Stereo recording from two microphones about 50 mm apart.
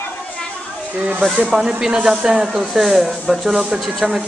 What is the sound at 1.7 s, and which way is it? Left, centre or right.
A woman's voice, centre.